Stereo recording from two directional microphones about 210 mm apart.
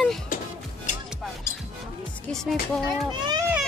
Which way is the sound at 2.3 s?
Centre (ahead or behind).